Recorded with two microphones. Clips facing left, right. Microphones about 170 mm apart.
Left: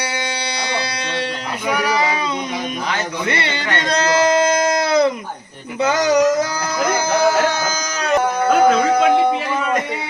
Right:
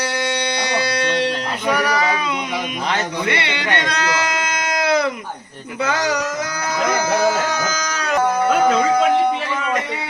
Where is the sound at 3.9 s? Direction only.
40° left (ahead or behind).